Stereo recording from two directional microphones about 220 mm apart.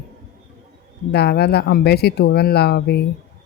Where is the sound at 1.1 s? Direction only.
45° left (ahead or behind).